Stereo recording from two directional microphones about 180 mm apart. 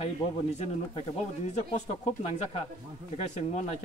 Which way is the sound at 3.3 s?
35° left (ahead or behind).